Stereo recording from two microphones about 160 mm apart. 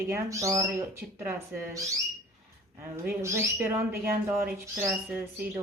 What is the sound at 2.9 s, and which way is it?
Speech, 15° right (ahead or behind).